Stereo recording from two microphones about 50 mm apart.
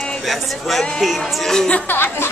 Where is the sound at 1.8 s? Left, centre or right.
Left.